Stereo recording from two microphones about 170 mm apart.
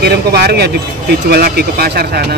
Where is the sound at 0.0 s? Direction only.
65° right (ahead or behind).